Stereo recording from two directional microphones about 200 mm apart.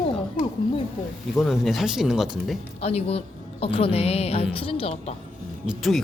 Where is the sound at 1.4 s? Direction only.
Centre (ahead or behind).